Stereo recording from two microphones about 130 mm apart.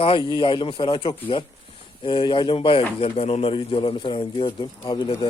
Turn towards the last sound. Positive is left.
turn(degrees=35)  # may be behind; listen again after turning